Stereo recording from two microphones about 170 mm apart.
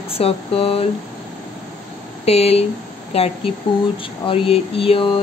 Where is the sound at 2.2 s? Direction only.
35° left (ahead or behind).